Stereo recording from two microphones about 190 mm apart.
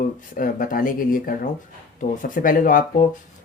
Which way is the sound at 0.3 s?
45° left (ahead or behind).